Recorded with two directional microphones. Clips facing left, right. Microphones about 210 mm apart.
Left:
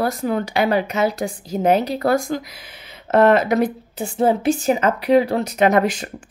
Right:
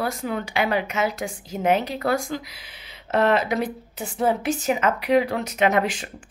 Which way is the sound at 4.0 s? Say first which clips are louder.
Left 5 dB; 30° left (ahead or behind).